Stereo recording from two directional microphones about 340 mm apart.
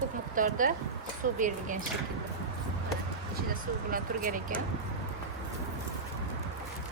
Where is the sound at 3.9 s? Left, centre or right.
Right.